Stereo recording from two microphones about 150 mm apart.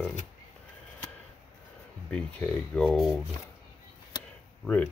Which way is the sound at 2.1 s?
10° left (ahead or behind).